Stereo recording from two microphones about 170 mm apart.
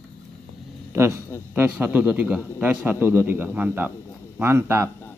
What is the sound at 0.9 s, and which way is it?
A man's voice, 15° right (ahead or behind).